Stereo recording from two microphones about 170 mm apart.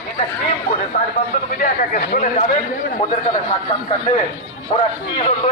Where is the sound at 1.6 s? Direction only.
55° left (ahead or behind).